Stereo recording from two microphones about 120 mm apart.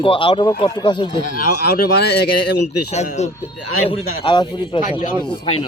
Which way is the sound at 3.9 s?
40° left (ahead or behind).